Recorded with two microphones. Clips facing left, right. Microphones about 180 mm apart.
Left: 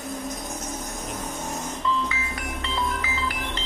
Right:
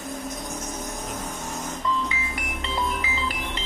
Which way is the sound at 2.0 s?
20° right (ahead or behind).